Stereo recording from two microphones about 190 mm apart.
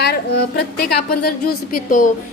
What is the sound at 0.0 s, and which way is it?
A woman's voice, 60° left (ahead or behind).